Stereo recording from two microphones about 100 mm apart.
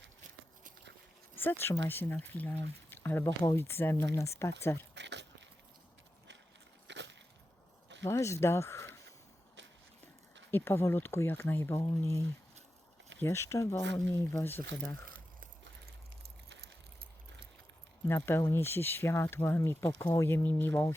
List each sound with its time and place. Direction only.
1.4 s speech: 20° left (ahead or behind)
8.0 s speech: 30° left (ahead or behind)
10.5 s speech: 20° left (ahead or behind)
13.2 s speech: 30° left (ahead or behind)
18.0 s speech: 25° left (ahead or behind)